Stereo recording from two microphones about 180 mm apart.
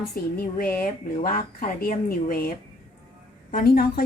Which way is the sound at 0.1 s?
55° left (ahead or behind).